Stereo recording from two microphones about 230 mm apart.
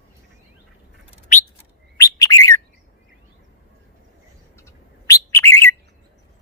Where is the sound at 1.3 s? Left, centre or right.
Left.